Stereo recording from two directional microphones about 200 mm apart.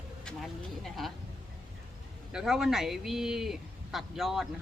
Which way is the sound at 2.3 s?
Centre (ahead or behind).